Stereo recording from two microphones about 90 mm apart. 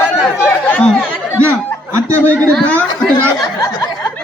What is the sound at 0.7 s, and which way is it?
Speech, 15° left (ahead or behind).